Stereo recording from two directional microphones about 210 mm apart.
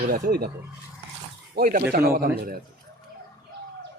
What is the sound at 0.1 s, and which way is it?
Speech, 45° right (ahead or behind).